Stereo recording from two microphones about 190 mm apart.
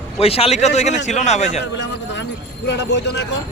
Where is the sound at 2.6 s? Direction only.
65° left (ahead or behind).